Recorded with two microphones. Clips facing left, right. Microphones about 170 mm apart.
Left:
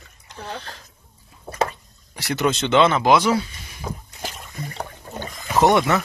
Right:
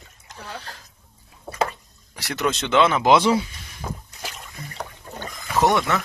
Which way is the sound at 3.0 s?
25° right (ahead or behind).